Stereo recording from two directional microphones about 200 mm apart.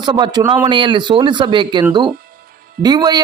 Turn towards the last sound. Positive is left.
turn(degrees=-20)  # may be behind; listen again after turning